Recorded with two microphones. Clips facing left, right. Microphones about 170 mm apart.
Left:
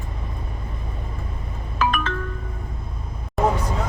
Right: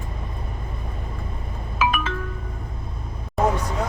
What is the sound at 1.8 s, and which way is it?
Music, 5° right (ahead or behind).